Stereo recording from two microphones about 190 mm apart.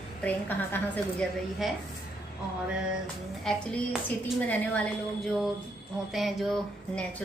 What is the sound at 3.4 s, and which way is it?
A woman's voice, 5° left (ahead or behind).